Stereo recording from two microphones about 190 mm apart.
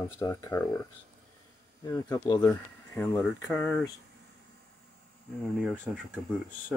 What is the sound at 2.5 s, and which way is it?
Speech, 10° left (ahead or behind).